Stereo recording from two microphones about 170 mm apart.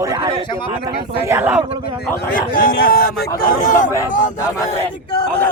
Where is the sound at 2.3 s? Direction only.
55° left (ahead or behind).